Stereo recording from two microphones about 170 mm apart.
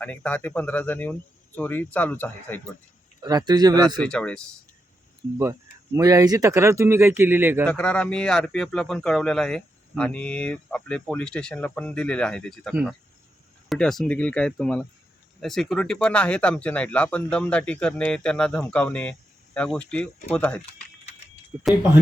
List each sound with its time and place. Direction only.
0.0 s speech: 10° left (ahead or behind)
3.2 s speech: 25° right (ahead or behind)
4.0 s speech: 5° left (ahead or behind)
5.4 s speech: 15° right (ahead or behind)
7.6 s speech: 5° left (ahead or behind)
21.5 s speech: 10° right (ahead or behind)